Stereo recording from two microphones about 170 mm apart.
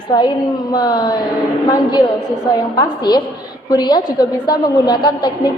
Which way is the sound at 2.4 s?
25° left (ahead or behind).